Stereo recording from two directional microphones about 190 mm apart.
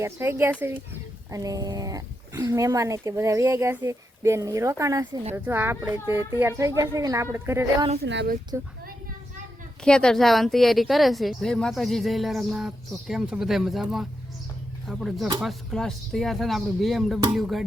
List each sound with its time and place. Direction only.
0.0 s speech: 15° right (ahead or behind)
8.0 s speech: 65° right (ahead or behind)
9.8 s a woman's voice: 5° left (ahead or behind)